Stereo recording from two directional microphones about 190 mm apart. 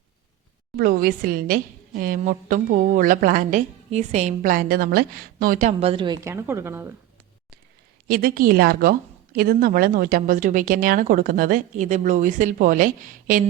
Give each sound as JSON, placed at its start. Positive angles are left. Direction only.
{"t": 0.8, "sound": "a woman's voice", "side_deg": -50}
{"t": 6.2, "sound": "a woman's voice", "side_deg": -15}
{"t": 8.0, "sound": "a woman's voice", "side_deg": -50}